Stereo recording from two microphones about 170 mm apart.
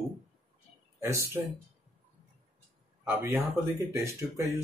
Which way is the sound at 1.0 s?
15° right (ahead or behind).